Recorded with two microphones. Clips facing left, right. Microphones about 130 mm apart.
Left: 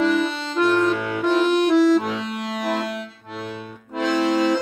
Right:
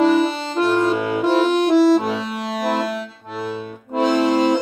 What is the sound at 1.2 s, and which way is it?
Music, 35° right (ahead or behind).